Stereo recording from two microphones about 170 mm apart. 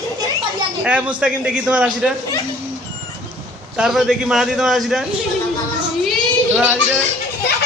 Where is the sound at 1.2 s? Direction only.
5° right (ahead or behind).